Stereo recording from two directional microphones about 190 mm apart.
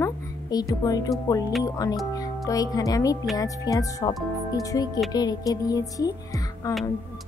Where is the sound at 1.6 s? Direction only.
20° left (ahead or behind).